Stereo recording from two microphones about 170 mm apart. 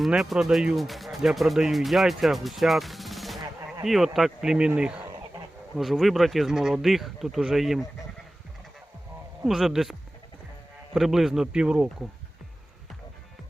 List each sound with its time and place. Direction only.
0.0 s speech: centre (ahead or behind)
9.4 s speech: centre (ahead or behind)
10.9 s speech: centre (ahead or behind)